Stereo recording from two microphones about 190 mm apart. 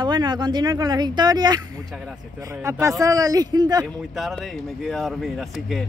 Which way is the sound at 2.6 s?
15° right (ahead or behind).